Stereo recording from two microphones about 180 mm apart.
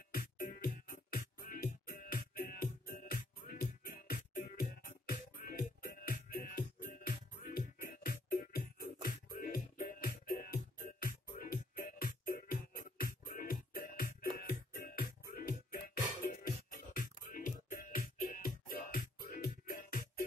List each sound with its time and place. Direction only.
0.1 s music: 55° left (ahead or behind)